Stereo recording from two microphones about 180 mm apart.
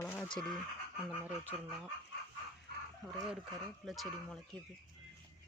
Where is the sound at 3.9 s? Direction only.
Centre (ahead or behind).